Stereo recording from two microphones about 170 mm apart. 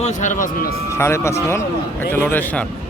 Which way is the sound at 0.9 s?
15° left (ahead or behind).